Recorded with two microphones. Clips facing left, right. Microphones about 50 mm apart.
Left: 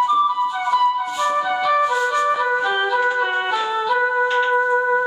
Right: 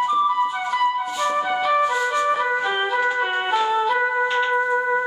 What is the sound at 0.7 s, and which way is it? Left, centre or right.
Music, right.